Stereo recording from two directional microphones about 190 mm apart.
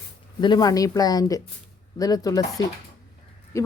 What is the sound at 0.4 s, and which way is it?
Speech, 20° left (ahead or behind).